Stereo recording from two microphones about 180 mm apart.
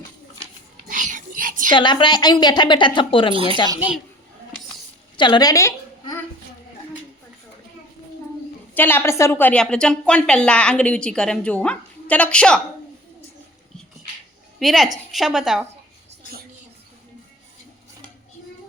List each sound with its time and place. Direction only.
0.9 s whispering: 45° right (ahead or behind)
1.7 s a woman's voice: 25° left (ahead or behind)
3.3 s speech: 30° right (ahead or behind)
3.8 s a woman's voice: 5° right (ahead or behind)
5.1 s a sound: 25° left (ahead or behind)
8.7 s a woman's voice: 10° left (ahead or behind)
14.6 s a woman's voice: centre (ahead or behind)